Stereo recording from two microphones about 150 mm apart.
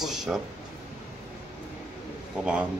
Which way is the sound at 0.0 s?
Centre (ahead or behind).